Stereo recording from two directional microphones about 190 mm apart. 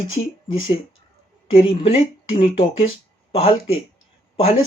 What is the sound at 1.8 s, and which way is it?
Speech, 30° left (ahead or behind).